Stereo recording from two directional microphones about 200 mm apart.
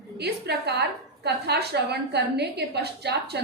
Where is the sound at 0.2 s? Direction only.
55° right (ahead or behind).